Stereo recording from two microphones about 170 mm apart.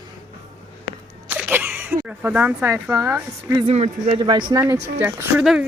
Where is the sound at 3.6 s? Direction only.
40° right (ahead or behind).